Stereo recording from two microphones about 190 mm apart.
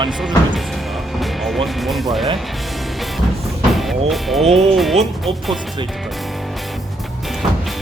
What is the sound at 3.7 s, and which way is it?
Speech, centre (ahead or behind).